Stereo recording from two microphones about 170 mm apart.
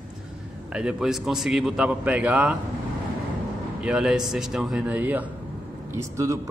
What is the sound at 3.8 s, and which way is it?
Speech, 5° right (ahead or behind).